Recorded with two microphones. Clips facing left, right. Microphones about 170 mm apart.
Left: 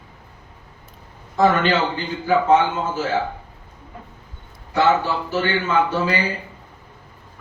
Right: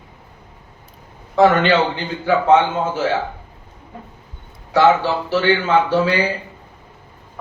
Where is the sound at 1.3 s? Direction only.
70° right (ahead or behind).